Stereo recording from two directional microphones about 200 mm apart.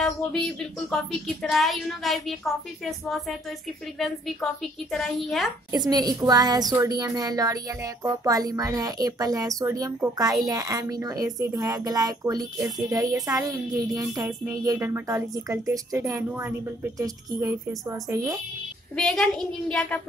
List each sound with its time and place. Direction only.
0.0 s speech: 5° left (ahead or behind)
5.7 s speech: 20° right (ahead or behind)
18.9 s speech: centre (ahead or behind)